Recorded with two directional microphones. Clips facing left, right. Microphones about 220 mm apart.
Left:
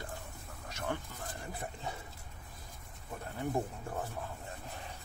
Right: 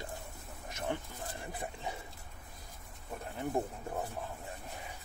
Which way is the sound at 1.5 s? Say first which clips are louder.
Even; 15° right (ahead or behind).